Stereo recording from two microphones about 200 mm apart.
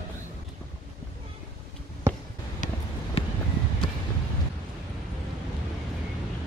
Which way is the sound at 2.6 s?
40° left (ahead or behind).